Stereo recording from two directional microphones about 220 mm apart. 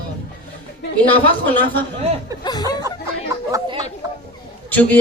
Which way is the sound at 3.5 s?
20° right (ahead or behind).